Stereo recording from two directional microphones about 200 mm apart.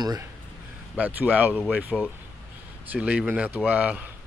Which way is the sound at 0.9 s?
10° right (ahead or behind).